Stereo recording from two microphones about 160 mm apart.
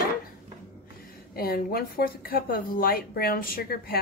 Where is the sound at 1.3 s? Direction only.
70° left (ahead or behind).